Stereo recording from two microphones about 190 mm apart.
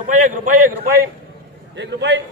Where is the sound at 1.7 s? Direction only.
65° right (ahead or behind).